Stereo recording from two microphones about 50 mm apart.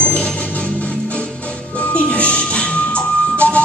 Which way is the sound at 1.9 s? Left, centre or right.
Left.